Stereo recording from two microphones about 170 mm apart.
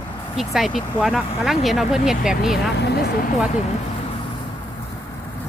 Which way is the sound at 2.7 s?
80° left.